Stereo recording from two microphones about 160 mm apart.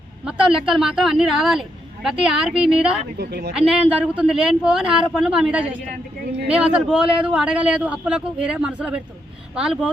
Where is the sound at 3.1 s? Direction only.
90° right.